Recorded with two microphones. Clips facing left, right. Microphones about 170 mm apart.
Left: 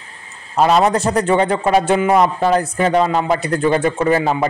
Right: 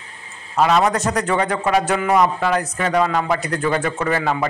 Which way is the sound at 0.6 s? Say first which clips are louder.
Left 3 dB; 30° left (ahead or behind).